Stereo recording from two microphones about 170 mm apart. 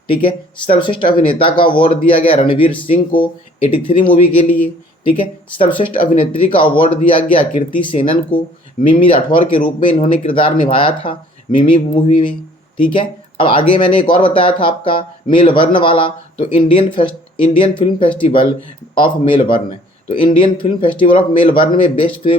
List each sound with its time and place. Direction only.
0.1 s speech: 30° left (ahead or behind)
4.3 s speech: 10° left (ahead or behind)
5.0 s speech: 30° left (ahead or behind)